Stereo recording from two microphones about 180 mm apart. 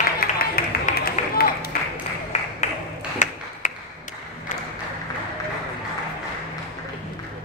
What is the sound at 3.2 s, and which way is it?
Ping, 40° left (ahead or behind).